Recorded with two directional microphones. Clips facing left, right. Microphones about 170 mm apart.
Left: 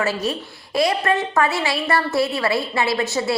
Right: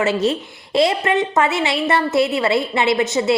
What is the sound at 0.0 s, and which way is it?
A woman's voice, 25° right (ahead or behind).